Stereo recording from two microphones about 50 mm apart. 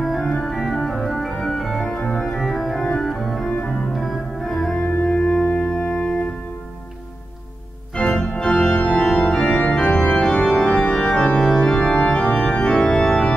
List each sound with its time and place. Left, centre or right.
0.0 s organ: centre
2.0 s organ: left
2.3 s organ: centre
8.0 s organ: centre